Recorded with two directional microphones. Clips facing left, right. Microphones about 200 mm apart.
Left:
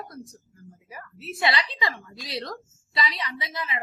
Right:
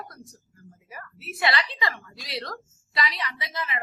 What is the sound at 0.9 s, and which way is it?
A woman's voice, 20° left (ahead or behind).